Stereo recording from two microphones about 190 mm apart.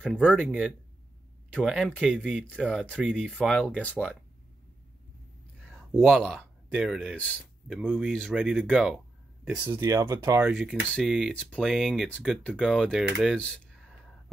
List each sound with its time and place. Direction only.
0.0 s speech: 5° left (ahead or behind)
5.9 s speech: centre (ahead or behind)
9.7 s speech: 15° right (ahead or behind)
10.5 s speech: centre (ahead or behind)